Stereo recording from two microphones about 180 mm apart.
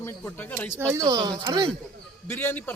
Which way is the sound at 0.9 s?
20° right (ahead or behind).